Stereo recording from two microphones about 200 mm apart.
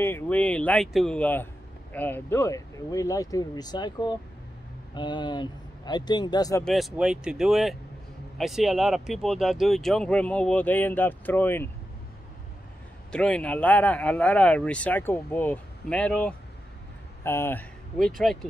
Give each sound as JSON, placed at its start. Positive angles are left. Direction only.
{"t": 0.0, "sound": "speech", "side_deg": 10}
{"t": 6.6, "sound": "speech", "side_deg": 0}
{"t": 13.1, "sound": "speech", "side_deg": 5}